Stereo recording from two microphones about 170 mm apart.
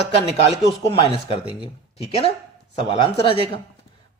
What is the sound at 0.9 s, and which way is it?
Speech, 35° left (ahead or behind).